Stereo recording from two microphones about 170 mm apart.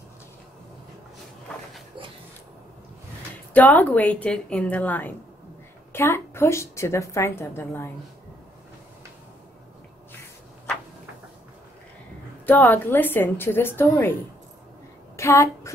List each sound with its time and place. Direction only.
3.5 s a woman's voice: 10° left (ahead or behind)
12.4 s a woman's voice: 10° left (ahead or behind)
15.1 s speech: 15° left (ahead or behind)